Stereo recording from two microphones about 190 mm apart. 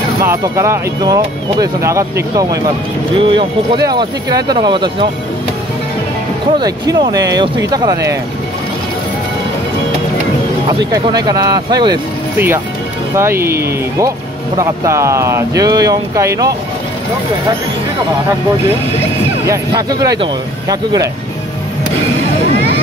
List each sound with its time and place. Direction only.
0.2 s speech: 15° right (ahead or behind)
6.6 s speech: 20° right (ahead or behind)
10.8 s speech: 20° right (ahead or behind)
13.1 s speech: 15° right (ahead or behind)
19.4 s speech: 20° right (ahead or behind)